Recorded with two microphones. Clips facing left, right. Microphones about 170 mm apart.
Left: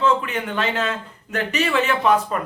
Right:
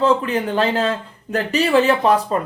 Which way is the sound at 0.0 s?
35° right (ahead or behind).